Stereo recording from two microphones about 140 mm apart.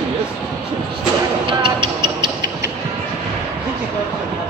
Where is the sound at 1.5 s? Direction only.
35° right (ahead or behind).